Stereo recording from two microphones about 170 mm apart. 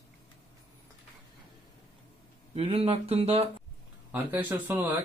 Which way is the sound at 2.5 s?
35° right (ahead or behind).